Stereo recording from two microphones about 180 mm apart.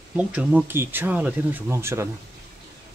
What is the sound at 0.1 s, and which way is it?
Speech, 5° right (ahead or behind).